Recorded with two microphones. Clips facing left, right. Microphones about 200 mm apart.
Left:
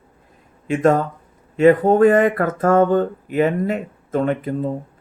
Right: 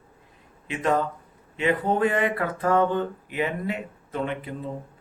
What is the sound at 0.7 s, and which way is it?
Speech, 45° left (ahead or behind).